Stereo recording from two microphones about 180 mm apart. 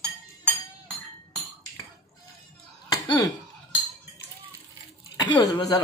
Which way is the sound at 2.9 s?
20° left (ahead or behind).